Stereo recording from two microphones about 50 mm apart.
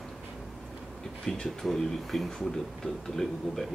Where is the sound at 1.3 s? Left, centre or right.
Centre.